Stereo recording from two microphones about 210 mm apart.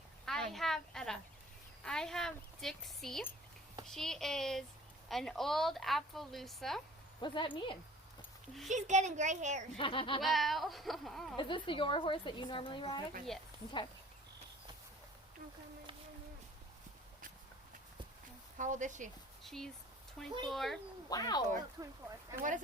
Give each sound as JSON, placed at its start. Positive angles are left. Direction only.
{"t": 0.3, "sound": "a woman's voice", "side_deg": 0}
{"t": 7.2, "sound": "a woman's voice", "side_deg": 25}
{"t": 8.7, "sound": "a child's voice", "side_deg": -35}
{"t": 9.7, "sound": "a woman's voice", "side_deg": 25}
{"t": 10.2, "sound": "a woman's voice", "side_deg": 0}
{"t": 11.3, "sound": "a woman's voice", "side_deg": 25}
{"t": 13.3, "sound": "a woman's voice", "side_deg": 0}
{"t": 18.5, "sound": "a child's voice", "side_deg": -35}
{"t": 19.4, "sound": "a woman's voice", "side_deg": 0}
{"t": 21.1, "sound": "a woman's voice", "side_deg": 20}
{"t": 21.8, "sound": "speech", "side_deg": -15}
{"t": 22.4, "sound": "a child's voice", "side_deg": -35}